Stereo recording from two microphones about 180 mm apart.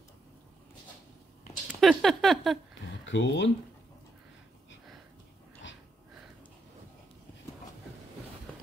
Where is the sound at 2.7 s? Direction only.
90° left.